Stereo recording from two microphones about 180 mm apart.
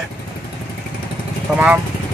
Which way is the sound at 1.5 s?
5° right (ahead or behind).